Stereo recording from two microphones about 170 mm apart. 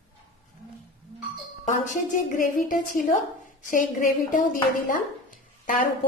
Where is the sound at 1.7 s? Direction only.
50° left (ahead or behind).